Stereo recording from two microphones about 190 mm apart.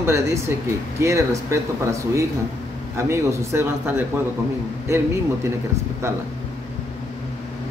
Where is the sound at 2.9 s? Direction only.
15° right (ahead or behind).